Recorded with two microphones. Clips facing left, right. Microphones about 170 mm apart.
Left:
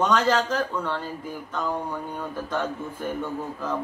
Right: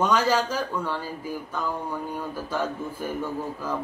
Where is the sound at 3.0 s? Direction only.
5° right (ahead or behind).